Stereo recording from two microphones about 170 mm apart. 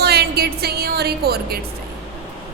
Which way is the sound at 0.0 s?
70° right (ahead or behind).